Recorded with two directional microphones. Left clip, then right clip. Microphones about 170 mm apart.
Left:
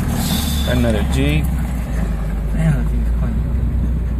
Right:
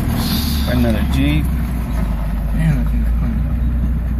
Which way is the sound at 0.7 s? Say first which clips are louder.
Even; 15° left (ahead or behind).